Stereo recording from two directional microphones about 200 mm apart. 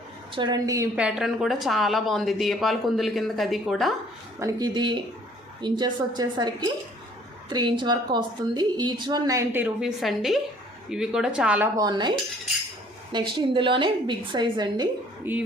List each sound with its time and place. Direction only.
0.3 s a woman's voice: 20° right (ahead or behind)
0.9 s speech: 5° right (ahead or behind)
4.4 s a woman's voice: 20° right (ahead or behind)
11.8 s a woman's voice: 20° right (ahead or behind)
13.1 s a woman's voice: 25° right (ahead or behind)
15.2 s a woman's voice: 10° right (ahead or behind)